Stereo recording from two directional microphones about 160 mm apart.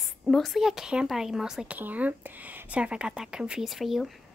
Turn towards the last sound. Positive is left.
turn(degrees=0)  # may be behind; listen again after turning